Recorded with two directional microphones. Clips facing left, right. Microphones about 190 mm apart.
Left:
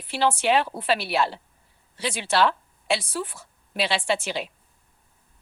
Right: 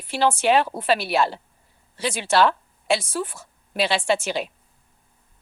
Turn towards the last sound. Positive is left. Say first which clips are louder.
# right 3 dB
turn(degrees=-45)  # may be behind; listen again after turning